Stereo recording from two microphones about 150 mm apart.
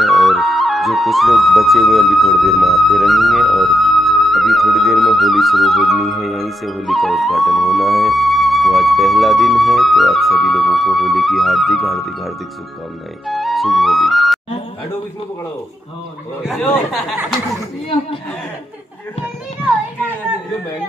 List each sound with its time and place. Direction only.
0.0 s speech: centre (ahead or behind)
13.3 s music: centre (ahead or behind)
16.6 s speech: 5° left (ahead or behind)